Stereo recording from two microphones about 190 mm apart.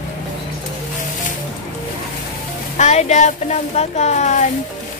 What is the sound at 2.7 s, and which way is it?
Speech, 35° left (ahead or behind).